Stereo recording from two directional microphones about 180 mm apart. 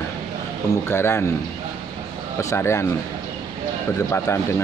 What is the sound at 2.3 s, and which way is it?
Speech, 15° left (ahead or behind).